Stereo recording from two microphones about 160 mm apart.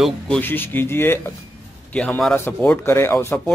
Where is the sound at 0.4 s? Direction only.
15° left (ahead or behind).